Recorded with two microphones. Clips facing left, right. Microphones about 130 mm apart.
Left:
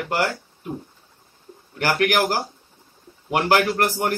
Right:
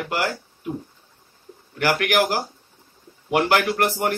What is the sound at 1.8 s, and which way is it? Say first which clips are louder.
Speech: even; 40° left (ahead or behind).